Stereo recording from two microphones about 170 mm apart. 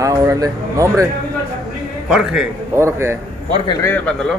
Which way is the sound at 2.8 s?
15° right (ahead or behind).